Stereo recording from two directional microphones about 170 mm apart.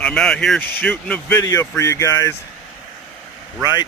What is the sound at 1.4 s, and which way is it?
Speech, 20° left (ahead or behind).